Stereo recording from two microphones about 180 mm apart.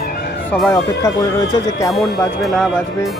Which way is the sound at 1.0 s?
20° left (ahead or behind).